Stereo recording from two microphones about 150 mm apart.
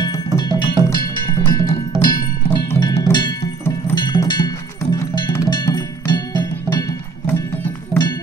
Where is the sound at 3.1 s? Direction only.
30° left (ahead or behind).